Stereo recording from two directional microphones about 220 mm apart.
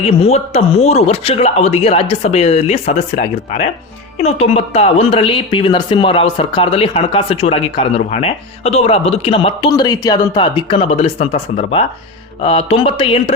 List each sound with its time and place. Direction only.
0.0 s speech: 30° left (ahead or behind)